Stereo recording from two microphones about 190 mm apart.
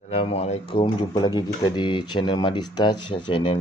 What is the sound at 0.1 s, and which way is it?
Speech, 30° left (ahead or behind).